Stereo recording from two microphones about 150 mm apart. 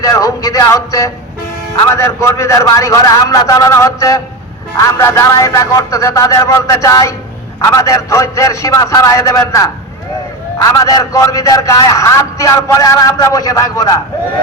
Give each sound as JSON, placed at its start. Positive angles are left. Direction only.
{"t": 0.0, "sound": "a man's voice", "side_deg": 25}